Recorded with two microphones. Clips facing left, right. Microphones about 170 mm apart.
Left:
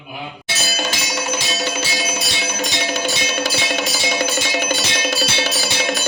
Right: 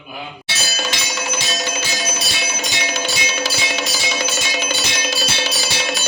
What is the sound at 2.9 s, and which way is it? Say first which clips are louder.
Music: left 2 dB; 55° left (ahead or behind).